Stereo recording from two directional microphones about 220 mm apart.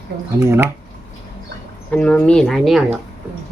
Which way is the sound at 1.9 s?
5° left (ahead or behind).